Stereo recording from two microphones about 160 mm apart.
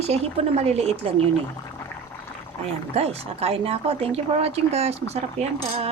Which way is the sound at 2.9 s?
40° right (ahead or behind).